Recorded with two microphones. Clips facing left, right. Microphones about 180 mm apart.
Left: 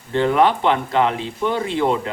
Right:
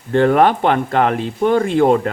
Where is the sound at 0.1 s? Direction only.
50° right (ahead or behind).